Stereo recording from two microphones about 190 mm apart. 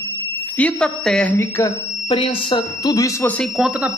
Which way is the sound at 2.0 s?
30° left (ahead or behind).